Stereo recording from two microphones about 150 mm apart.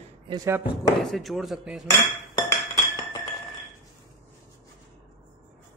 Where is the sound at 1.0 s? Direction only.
Centre (ahead or behind).